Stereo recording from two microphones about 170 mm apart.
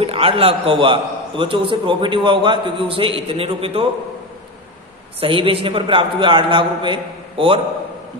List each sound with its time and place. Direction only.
0.0 s a man's voice: 35° right (ahead or behind)
5.2 s a man's voice: 35° right (ahead or behind)